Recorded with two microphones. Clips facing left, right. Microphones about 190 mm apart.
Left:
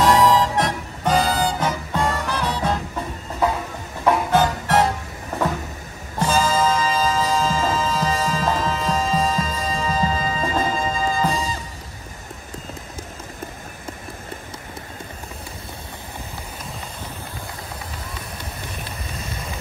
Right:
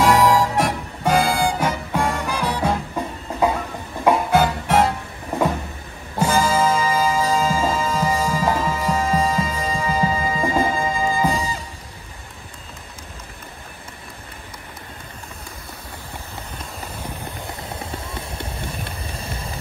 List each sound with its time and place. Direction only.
0.0 s music: 10° right (ahead or behind)
4.0 s music: 10° right (ahead or behind)
6.1 s music: 10° right (ahead or behind)
19.1 s vehicle: 30° right (ahead or behind)